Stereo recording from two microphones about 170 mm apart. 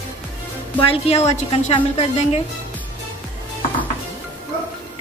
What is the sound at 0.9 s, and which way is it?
Speech, 40° left (ahead or behind).